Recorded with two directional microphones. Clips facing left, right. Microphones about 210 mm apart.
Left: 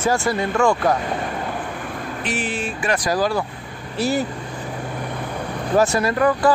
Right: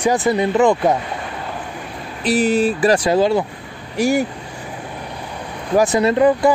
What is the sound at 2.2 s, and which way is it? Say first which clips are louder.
Speech: right 11 dB; 35° right (ahead or behind).